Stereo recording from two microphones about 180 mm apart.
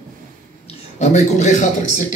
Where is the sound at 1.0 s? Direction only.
40° left (ahead or behind).